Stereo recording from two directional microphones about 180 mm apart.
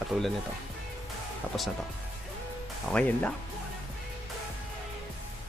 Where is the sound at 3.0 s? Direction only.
5° left (ahead or behind).